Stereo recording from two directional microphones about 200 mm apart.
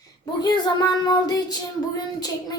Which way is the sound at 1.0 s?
20° left (ahead or behind).